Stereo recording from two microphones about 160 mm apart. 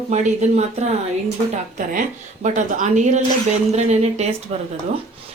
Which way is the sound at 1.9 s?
55° right (ahead or behind).